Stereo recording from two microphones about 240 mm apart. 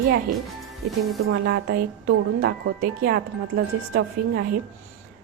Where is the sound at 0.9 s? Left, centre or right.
Centre.